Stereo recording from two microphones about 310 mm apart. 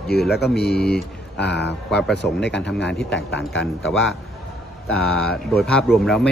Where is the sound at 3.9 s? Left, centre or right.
Centre.